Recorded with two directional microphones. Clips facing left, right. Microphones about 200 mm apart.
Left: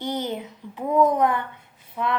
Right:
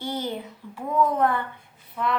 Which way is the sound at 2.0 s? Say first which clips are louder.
Left 1 dB; 20° left (ahead or behind).